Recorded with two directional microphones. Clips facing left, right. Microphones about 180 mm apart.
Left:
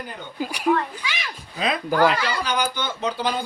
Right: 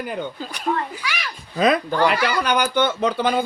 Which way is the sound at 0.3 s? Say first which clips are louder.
Left 4 dB; 10° left (ahead or behind).